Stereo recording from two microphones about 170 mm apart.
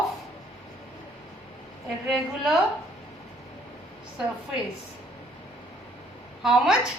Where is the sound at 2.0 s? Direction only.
Centre (ahead or behind).